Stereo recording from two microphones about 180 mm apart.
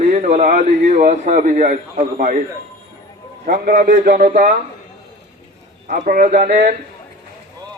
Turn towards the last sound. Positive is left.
turn(degrees=-45)  # may be behind; listen again after turning